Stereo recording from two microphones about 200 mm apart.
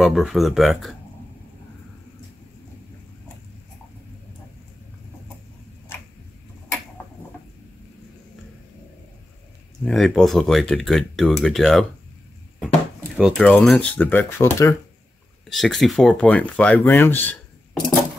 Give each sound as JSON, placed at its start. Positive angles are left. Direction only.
{"t": 0.0, "sound": "speech", "side_deg": 0}
{"t": 9.8, "sound": "speech", "side_deg": 0}
{"t": 13.2, "sound": "speech", "side_deg": 5}
{"t": 15.5, "sound": "speech", "side_deg": 0}